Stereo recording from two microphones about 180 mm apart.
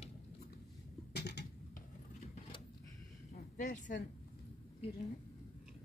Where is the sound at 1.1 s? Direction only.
70° left (ahead or behind).